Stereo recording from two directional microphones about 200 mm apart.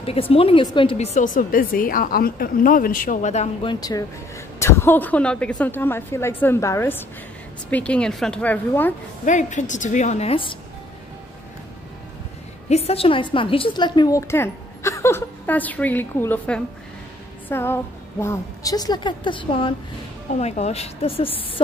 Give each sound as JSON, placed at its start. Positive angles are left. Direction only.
{"t": 0.0, "sound": "a woman's voice", "side_deg": 30}
{"t": 3.6, "sound": "a woman's voice", "side_deg": 20}
{"t": 9.2, "sound": "a woman's voice", "side_deg": 40}
{"t": 12.6, "sound": "a woman's voice", "side_deg": 30}